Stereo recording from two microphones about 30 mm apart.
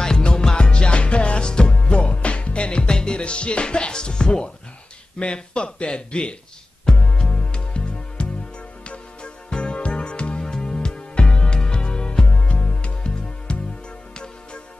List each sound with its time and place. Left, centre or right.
0.0 s music: left
0.7 s music: left
5.2 s speech: left
6.9 s music: left
10.4 s music: centre